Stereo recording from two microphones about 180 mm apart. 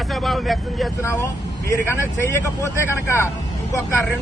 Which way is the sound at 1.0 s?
15° left (ahead or behind).